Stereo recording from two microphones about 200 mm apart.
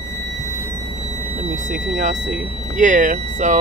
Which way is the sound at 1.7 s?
40° right (ahead or behind).